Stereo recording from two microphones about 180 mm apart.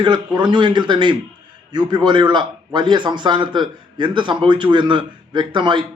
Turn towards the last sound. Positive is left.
turn(degrees=-25)  # may be behind; listen again after turning